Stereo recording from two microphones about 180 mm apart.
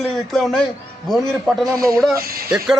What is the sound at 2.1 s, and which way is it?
Speech, 55° right (ahead or behind).